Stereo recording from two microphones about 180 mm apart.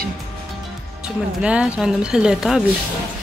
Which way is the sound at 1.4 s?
5° right (ahead or behind).